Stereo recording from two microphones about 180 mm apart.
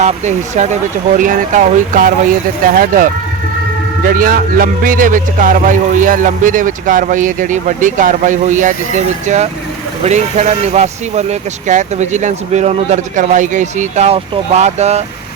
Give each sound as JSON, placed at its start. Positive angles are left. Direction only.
{"t": 0.0, "sound": "speech", "side_deg": -40}